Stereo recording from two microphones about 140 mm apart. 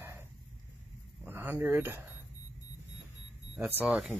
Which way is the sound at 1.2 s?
15° right (ahead or behind).